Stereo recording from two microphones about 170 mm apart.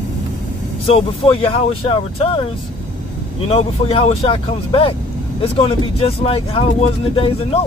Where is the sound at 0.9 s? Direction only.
35° left (ahead or behind).